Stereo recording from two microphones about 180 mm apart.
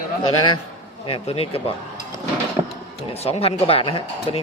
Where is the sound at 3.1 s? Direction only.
35° left (ahead or behind).